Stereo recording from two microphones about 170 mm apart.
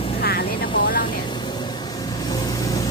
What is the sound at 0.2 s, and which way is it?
Vehicle, 65° left (ahead or behind).